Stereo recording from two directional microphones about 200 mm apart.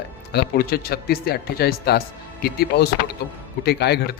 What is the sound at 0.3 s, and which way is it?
Speech, 50° left (ahead or behind).